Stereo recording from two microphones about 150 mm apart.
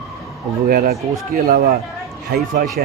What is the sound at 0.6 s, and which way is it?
Speech, 75° right (ahead or behind).